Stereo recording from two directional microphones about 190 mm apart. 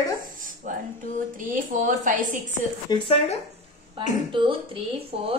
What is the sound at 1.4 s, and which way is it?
Speech, 45° right (ahead or behind).